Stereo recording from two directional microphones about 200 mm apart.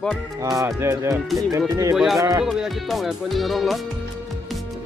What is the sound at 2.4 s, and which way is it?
Speech, centre (ahead or behind).